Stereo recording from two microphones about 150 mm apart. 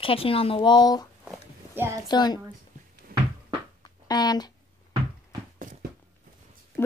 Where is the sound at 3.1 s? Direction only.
75° right (ahead or behind).